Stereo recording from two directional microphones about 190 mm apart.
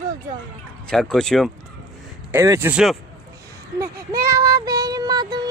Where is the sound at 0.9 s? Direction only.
5° left (ahead or behind).